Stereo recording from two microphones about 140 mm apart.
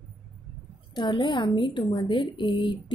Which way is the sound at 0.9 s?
35° left (ahead or behind).